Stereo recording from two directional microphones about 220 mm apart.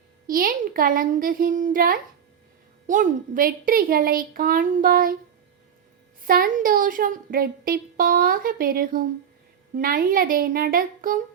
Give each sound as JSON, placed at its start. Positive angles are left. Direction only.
{"t": 0.3, "sound": "speech", "side_deg": -40}
{"t": 6.2, "sound": "speech", "side_deg": -40}